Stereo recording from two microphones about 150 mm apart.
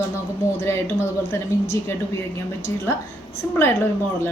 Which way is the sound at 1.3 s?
15° left (ahead or behind).